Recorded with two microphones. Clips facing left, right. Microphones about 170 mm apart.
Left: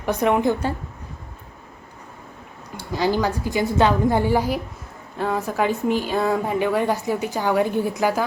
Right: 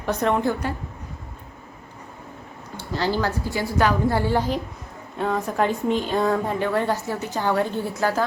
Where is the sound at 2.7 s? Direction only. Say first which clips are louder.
Left 3 dB; 15° left (ahead or behind).